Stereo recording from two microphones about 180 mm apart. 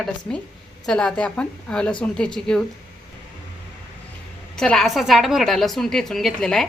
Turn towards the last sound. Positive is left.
turn(degrees=5)  # may be behind; listen again after turning